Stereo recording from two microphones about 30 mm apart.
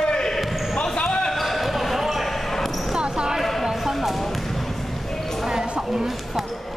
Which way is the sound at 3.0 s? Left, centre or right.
Right.